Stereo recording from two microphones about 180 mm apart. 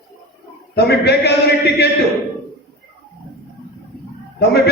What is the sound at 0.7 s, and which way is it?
Speech, 65° left (ahead or behind).